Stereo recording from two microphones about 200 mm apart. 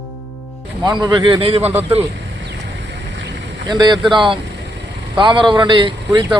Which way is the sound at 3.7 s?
25° right (ahead or behind).